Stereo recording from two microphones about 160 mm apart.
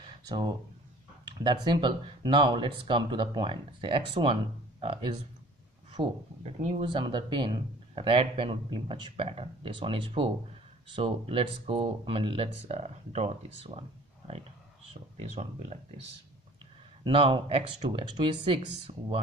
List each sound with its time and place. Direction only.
0.0 s a sound: 25° right (ahead or behind)
1.2 s speech: 30° right (ahead or behind)
6.4 s speech: 45° right (ahead or behind)
6.9 s speech: 30° right (ahead or behind)
17.0 s speech: 35° right (ahead or behind)